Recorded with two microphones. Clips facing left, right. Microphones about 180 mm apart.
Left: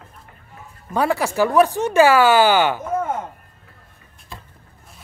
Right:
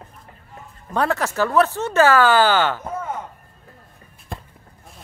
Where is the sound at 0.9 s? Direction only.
10° left (ahead or behind).